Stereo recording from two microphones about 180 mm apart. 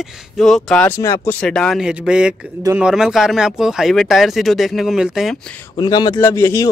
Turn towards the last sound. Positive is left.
turn(degrees=15)  # may be behind; listen again after turning